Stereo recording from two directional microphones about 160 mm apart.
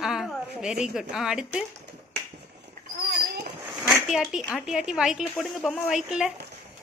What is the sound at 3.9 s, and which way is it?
Speech, 5° right (ahead or behind).